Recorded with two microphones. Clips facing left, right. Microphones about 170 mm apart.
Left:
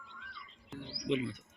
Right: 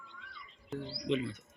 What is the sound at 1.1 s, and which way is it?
Speech, 15° left (ahead or behind).